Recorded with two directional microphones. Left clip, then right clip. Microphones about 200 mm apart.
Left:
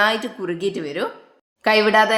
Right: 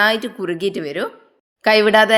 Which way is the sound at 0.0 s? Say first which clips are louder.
Right 2 dB; 35° right (ahead or behind).